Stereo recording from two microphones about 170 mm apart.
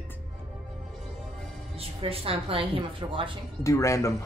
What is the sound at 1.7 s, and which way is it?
A woman's voice, 35° right (ahead or behind).